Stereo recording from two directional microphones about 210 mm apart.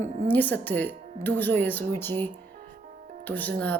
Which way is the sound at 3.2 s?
10° left (ahead or behind).